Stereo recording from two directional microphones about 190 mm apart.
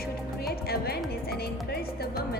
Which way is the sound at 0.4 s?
55° left (ahead or behind).